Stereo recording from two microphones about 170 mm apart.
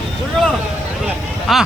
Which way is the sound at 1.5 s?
Centre (ahead or behind).